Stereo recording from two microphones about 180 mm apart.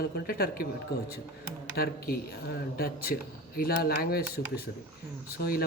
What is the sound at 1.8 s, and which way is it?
Speech, 55° left (ahead or behind).